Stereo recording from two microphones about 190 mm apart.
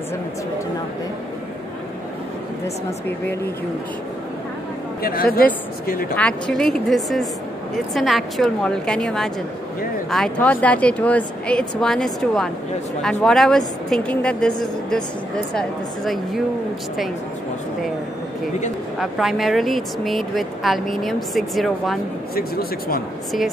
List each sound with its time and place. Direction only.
5.0 s speech: 50° left (ahead or behind)
6.1 s speech: 5° left (ahead or behind)
18.9 s speech: centre (ahead or behind)
22.3 s speech: 50° left (ahead or behind)